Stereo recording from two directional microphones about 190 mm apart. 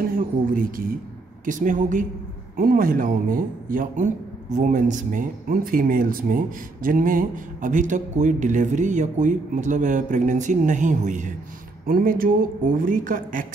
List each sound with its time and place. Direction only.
0.1 s a woman's voice: 45° right (ahead or behind)